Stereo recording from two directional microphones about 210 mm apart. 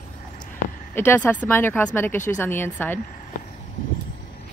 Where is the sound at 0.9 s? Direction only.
10° left (ahead or behind).